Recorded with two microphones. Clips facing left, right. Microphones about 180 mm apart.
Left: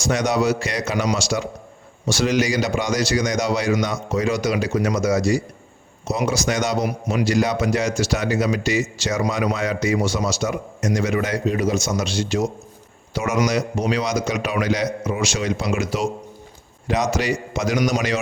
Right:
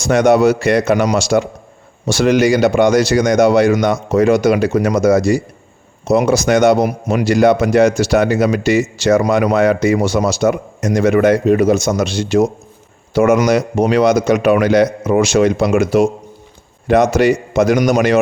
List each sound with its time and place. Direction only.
0.0 s a man's voice: 55° right (ahead or behind)